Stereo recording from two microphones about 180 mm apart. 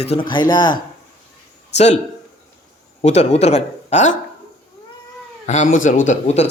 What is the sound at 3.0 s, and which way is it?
Speech, 40° left (ahead or behind).